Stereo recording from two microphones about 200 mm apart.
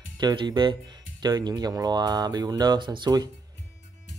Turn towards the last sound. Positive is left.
turn(degrees=-20)  # may be behind; listen again after turning